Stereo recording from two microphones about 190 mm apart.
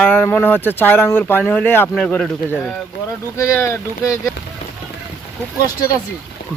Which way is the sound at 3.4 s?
15° left (ahead or behind).